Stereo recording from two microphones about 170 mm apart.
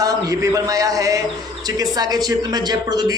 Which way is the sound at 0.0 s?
20° right (ahead or behind).